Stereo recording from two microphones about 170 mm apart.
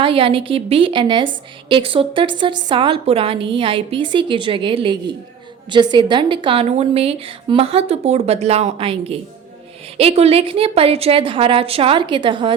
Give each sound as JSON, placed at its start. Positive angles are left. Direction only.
{"t": 0.0, "sound": "a woman's voice", "side_deg": -35}